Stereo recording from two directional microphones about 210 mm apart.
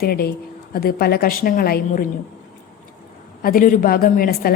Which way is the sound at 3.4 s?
45° left (ahead or behind).